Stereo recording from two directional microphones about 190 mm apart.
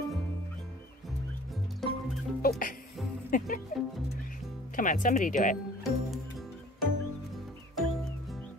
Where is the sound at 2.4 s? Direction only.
50° left (ahead or behind).